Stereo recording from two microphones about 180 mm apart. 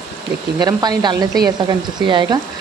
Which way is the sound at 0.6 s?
20° right (ahead or behind).